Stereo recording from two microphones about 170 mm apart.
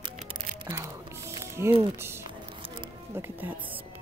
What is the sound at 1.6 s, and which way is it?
Speech, 15° right (ahead or behind).